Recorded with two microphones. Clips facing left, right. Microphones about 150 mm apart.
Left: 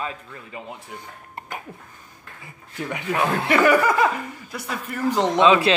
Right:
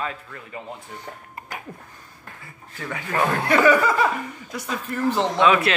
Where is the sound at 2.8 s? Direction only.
15° left (ahead or behind).